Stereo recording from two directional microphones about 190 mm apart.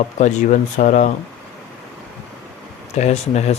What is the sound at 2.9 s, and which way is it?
Speech, 35° left (ahead or behind).